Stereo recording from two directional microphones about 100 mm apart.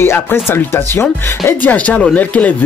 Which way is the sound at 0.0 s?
25° left (ahead or behind).